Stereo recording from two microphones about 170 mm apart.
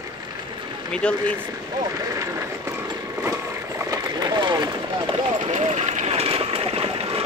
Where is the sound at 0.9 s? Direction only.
5° left (ahead or behind).